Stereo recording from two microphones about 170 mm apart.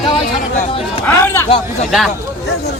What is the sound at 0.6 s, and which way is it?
Speech, 35° left (ahead or behind).